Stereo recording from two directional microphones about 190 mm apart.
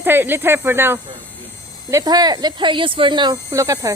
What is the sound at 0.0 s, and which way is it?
Speech, 10° right (ahead or behind).